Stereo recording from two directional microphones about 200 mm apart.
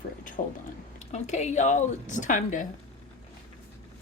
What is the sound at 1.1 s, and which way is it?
A woman's voice, 35° left (ahead or behind).